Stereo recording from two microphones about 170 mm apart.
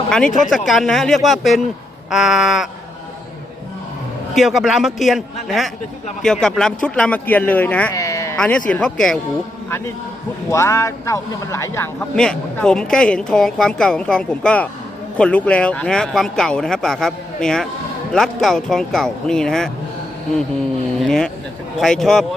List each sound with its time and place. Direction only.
0.5 s speech: centre (ahead or behind)
4.4 s speech: centre (ahead or behind); by 8.4 s 20° left (ahead or behind)
8.4 s speech: 5° left (ahead or behind)
10.5 s speech: 20° left (ahead or behind)
12.1 s speech: 5° left (ahead or behind)
21.0 s speech: 5° left (ahead or behind)